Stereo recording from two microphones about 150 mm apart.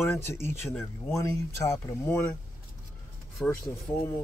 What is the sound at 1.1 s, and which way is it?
Speech, 20° left (ahead or behind).